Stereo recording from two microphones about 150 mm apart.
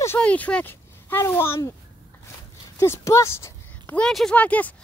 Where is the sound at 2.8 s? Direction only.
20° left (ahead or behind).